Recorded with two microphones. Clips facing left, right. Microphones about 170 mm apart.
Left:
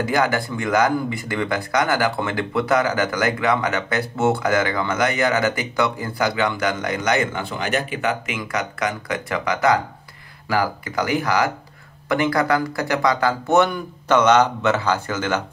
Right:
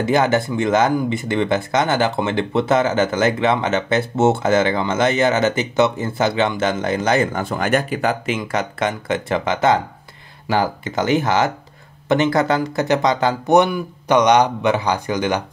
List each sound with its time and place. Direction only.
0.0 s speech: 25° right (ahead or behind)
7.3 s speech: 45° right (ahead or behind); by 15.4 s 15° right (ahead or behind)